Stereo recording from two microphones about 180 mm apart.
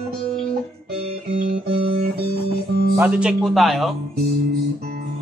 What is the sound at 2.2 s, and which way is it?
Music, 60° right (ahead or behind).